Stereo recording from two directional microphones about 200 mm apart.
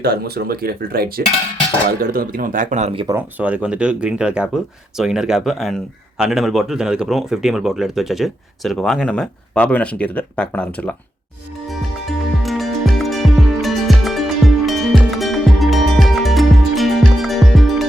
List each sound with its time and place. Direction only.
0.0 s speech: 50° right (ahead or behind); by 3.2 s 25° right (ahead or behind)
3.2 s speech: 10° right (ahead or behind)
12.4 s music: centre (ahead or behind)